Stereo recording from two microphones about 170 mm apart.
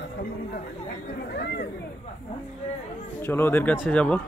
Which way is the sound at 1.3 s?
80° left.